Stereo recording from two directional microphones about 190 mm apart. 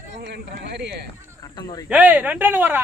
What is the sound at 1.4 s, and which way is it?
Speech, 20° left (ahead or behind).